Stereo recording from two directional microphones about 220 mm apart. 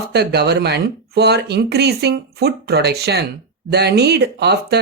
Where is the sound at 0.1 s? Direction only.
50° right (ahead or behind).